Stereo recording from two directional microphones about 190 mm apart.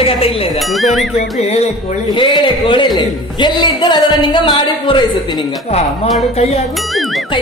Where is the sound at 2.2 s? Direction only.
25° left (ahead or behind).